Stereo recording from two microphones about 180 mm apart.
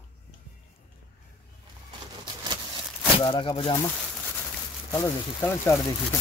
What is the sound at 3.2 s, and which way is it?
Speech, 25° left (ahead or behind).